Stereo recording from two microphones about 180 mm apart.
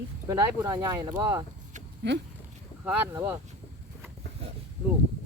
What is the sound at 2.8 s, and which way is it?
Speech, 10° right (ahead or behind).